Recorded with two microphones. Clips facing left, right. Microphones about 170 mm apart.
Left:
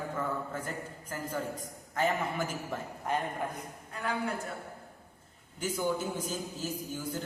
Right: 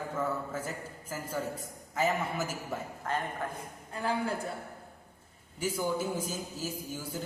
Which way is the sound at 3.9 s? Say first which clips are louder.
Right 2 dB; 30° right (ahead or behind).